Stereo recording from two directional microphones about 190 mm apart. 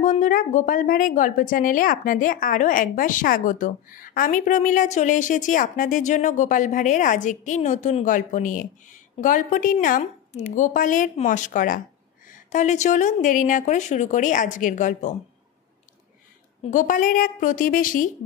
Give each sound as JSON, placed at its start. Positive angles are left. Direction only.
{"t": 0.0, "sound": "a woman's voice", "side_deg": 40}
{"t": 16.7, "sound": "a woman's voice", "side_deg": 45}